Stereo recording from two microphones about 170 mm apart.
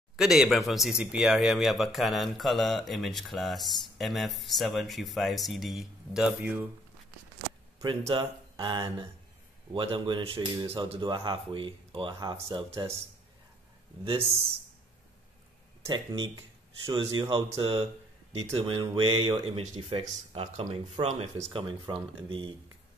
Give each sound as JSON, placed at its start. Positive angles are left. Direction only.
{"t": 0.1, "sound": "a man's voice", "side_deg": -5}
{"t": 8.1, "sound": "speech", "side_deg": -30}
{"t": 15.9, "sound": "speech", "side_deg": -25}